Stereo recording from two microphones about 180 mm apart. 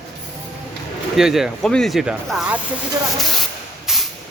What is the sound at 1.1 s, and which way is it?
Speech, centre (ahead or behind).